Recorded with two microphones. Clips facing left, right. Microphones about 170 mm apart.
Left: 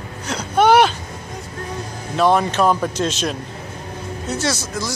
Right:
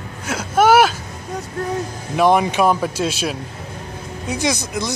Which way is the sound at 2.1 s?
15° right (ahead or behind).